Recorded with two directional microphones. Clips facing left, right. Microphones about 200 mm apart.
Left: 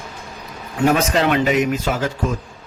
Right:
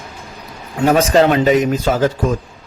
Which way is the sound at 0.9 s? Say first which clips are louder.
Right 5 dB; 35° right (ahead or behind).